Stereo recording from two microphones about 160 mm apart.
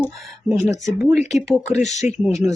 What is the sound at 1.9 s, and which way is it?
Speech, 45° left (ahead or behind).